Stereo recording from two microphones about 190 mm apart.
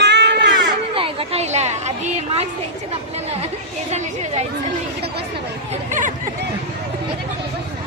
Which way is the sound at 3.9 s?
35° right (ahead or behind).